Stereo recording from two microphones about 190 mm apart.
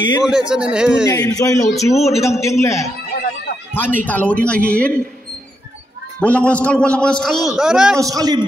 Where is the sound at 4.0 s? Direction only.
10° left (ahead or behind).